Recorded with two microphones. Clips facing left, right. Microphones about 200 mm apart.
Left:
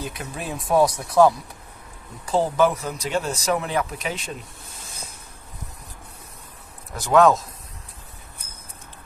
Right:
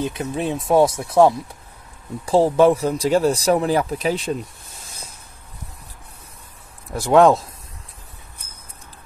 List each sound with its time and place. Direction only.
0.0 s speech: 25° right (ahead or behind)
7.0 s speech: 30° right (ahead or behind)